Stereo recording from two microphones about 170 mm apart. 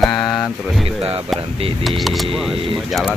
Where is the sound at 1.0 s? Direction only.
35° right (ahead or behind).